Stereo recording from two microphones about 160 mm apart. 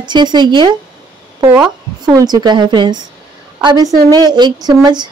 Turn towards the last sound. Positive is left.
turn(degrees=-25)  # may be behind; listen again after turning